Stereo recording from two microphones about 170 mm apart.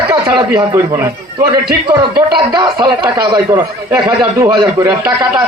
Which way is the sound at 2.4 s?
25° right (ahead or behind).